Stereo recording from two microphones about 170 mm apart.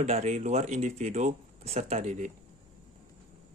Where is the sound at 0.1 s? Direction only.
40° right (ahead or behind).